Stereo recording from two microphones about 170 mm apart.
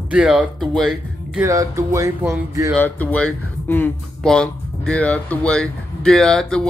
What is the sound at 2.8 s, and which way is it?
Speech, 10° left (ahead or behind).